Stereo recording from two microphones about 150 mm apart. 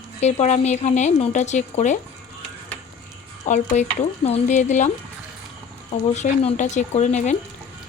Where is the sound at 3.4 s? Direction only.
50° left (ahead or behind).